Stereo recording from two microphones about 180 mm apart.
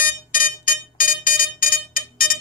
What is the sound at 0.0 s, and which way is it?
Smoke detector, 50° left (ahead or behind).